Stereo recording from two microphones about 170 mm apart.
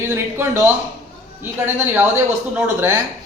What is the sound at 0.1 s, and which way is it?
Speech, 15° right (ahead or behind).